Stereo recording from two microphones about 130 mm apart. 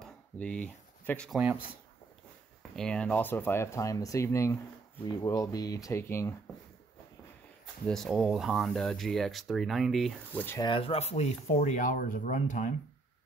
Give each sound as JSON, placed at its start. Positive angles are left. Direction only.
{"t": 0.0, "sound": "a sound", "side_deg": 10}
{"t": 2.7, "sound": "speech", "side_deg": 5}
{"t": 7.9, "sound": "speech", "side_deg": 0}
{"t": 10.3, "sound": "speech", "side_deg": 15}
{"t": 10.6, "sound": "speech", "side_deg": 45}